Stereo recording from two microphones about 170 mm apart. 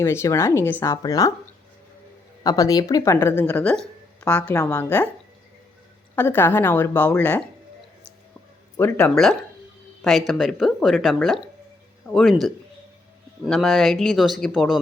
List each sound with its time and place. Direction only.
0.0 s speech: 15° left (ahead or behind)
2.4 s speech: 20° left (ahead or behind)
6.1 s speech: 10° left (ahead or behind)
8.7 s speech: 15° left (ahead or behind)